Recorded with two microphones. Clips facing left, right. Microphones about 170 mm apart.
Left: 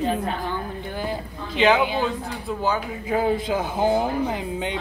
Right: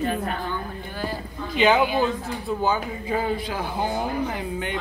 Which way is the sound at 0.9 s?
20° left (ahead or behind).